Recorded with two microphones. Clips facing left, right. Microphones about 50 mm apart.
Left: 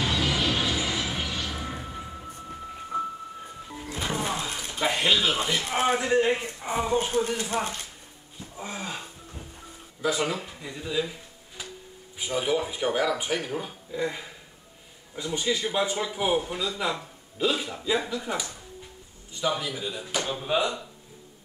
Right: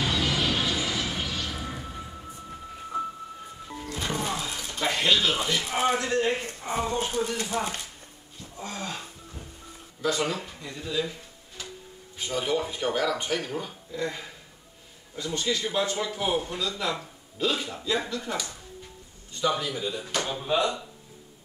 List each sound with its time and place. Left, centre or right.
0.0 s music: centre
3.6 s music: centre
5.6 s a man's voice: left
5.9 s speech: centre
8.5 s a sound: centre
10.0 s speech: centre